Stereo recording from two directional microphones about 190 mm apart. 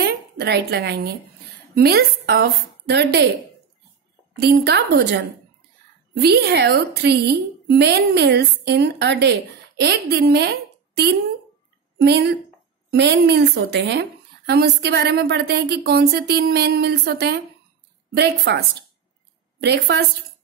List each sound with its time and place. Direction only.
0.0 s a sound: 60° right (ahead or behind)
1.8 s a woman's voice: 55° right (ahead or behind)
4.4 s a woman's voice: 60° right (ahead or behind)
19.6 s a woman's voice: 65° right (ahead or behind)